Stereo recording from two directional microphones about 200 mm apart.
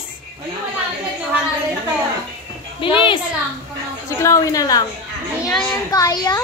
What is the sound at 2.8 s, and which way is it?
Speech, 25° left (ahead or behind).